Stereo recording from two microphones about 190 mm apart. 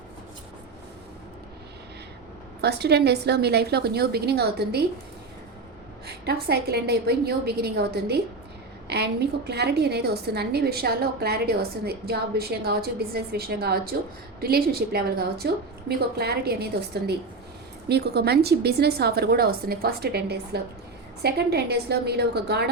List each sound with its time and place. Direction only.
2.6 s a woman's voice: 60° right (ahead or behind)
6.1 s a woman's voice: 60° right (ahead or behind)
9.5 s a woman's voice: 60° right (ahead or behind)